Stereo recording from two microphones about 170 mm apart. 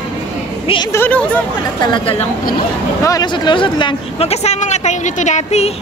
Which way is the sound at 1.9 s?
35° left (ahead or behind).